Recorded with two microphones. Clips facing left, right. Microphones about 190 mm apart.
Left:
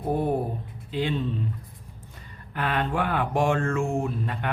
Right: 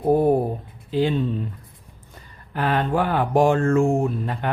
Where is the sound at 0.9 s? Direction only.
40° right (ahead or behind).